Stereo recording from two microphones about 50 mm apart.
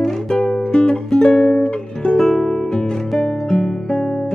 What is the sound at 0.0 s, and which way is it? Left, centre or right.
Music, centre.